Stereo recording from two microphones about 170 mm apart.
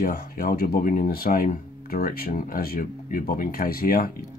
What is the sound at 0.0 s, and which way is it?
Speech, 55° left (ahead or behind).